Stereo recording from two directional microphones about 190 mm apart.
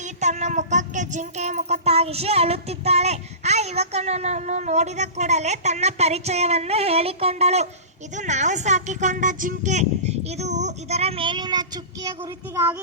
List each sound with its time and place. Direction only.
0.0 s speech: 40° right (ahead or behind); by 12.7 s 15° right (ahead or behind)